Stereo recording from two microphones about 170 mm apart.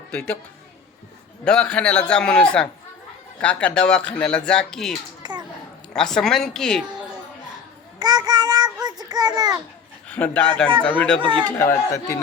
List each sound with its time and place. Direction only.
0.1 s speech: 5° left (ahead or behind)
1.5 s speech: 5° left (ahead or behind)
5.2 s a sound: 25° right (ahead or behind)
5.9 s speech: 5° left (ahead or behind)
7.9 s child singing: 25° right (ahead or behind)
10.1 s speech: 10° left (ahead or behind)
11.2 s speech: 30° right (ahead or behind)
11.4 s speech: 10° left (ahead or behind)